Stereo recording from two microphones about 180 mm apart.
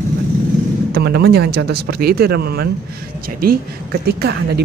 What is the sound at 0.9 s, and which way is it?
Speech, 65° right (ahead or behind).